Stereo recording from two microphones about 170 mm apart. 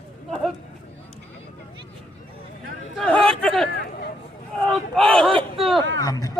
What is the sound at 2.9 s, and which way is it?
Chatter, 5° left (ahead or behind).